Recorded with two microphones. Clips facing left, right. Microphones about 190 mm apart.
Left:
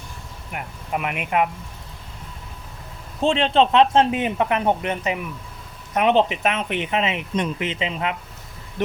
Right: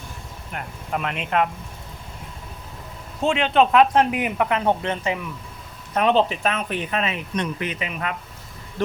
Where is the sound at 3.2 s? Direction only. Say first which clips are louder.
Left 1 dB; 30° left (ahead or behind).